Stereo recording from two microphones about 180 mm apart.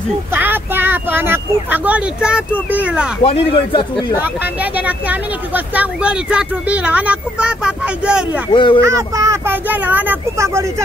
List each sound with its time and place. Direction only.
0.3 s speech: 10° right (ahead or behind)
3.2 s speech: 30° left (ahead or behind)
4.2 s speech: 10° right (ahead or behind)
8.5 s speech: 30° left (ahead or behind)
8.8 s speech: 15° right (ahead or behind)